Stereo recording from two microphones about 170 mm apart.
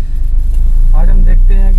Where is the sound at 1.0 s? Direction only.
Centre (ahead or behind).